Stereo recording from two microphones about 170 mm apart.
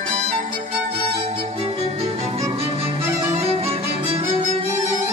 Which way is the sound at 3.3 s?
35° right (ahead or behind).